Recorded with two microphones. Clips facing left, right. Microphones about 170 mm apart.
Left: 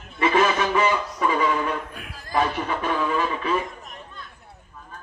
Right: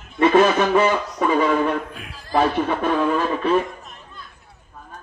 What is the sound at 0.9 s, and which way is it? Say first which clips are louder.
Music: right 3 dB; 35° right (ahead or behind).